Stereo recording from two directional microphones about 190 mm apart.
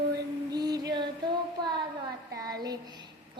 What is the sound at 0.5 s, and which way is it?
Female singing, 20° right (ahead or behind).